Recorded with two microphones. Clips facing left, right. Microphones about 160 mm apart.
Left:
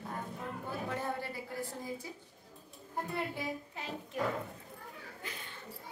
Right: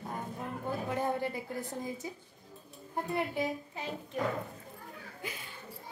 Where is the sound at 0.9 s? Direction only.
15° right (ahead or behind).